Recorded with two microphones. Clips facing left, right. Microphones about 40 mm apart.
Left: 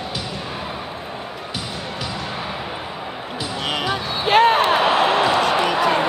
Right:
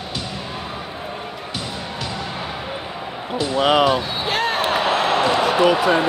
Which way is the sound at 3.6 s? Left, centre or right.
Centre.